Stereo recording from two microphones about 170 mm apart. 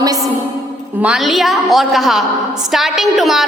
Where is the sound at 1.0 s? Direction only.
Centre (ahead or behind).